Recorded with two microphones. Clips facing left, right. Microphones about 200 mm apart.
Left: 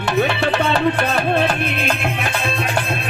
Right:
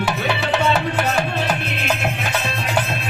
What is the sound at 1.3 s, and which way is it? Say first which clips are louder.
Music: left 5 dB; 55° left (ahead or behind).